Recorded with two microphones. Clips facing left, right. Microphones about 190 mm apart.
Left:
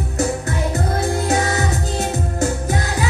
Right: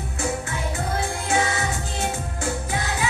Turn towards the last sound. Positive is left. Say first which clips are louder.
# left 4 dB
turn(degrees=40)  # may be behind; listen again after turning